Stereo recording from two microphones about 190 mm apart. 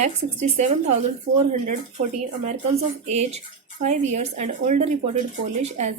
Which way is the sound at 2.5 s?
35° right (ahead or behind).